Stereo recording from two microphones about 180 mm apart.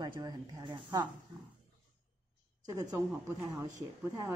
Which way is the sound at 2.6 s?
20° right (ahead or behind).